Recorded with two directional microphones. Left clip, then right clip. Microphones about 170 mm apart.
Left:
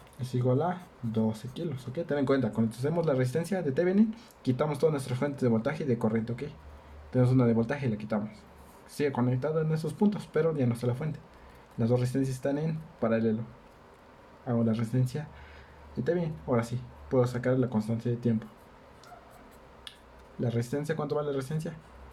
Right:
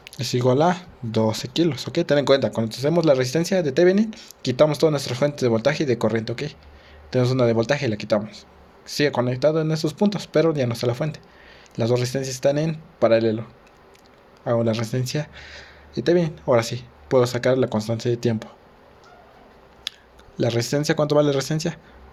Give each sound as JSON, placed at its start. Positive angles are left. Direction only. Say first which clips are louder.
{"t": 0.2, "sound": "speech", "louder": "right 10 dB", "side_deg": -50}
{"t": 14.4, "sound": "speech", "louder": "right 9 dB", "side_deg": -50}
{"t": 20.4, "sound": "speech", "louder": "right 11 dB", "side_deg": -50}